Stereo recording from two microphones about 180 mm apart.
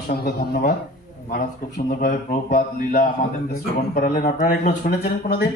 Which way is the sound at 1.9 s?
50° left (ahead or behind).